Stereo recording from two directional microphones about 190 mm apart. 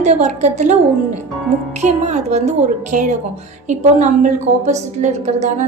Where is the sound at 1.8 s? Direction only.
35° right (ahead or behind).